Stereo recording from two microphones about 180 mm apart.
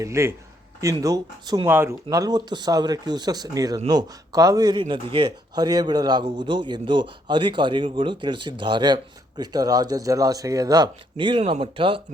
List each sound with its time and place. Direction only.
0.0 s speech: 15° right (ahead or behind)